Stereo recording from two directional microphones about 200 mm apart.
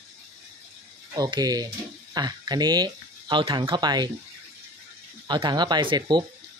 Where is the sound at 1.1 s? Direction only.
20° right (ahead or behind).